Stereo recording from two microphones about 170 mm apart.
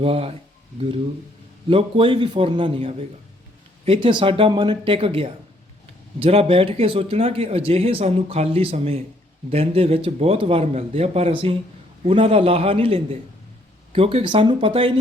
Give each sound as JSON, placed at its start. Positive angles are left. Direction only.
{"t": 0.0, "sound": "speech", "side_deg": -35}
{"t": 1.7, "sound": "speech", "side_deg": -30}